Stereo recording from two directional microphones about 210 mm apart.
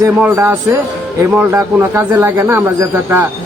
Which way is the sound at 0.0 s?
10° right (ahead or behind).